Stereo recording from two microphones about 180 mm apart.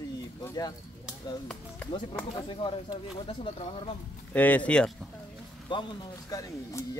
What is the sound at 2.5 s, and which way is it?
Speech, 25° left (ahead or behind).